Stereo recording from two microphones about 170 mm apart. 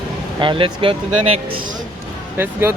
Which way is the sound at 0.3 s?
30° right (ahead or behind).